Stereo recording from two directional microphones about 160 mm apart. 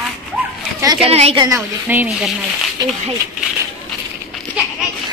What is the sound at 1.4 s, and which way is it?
Speech, 15° right (ahead or behind).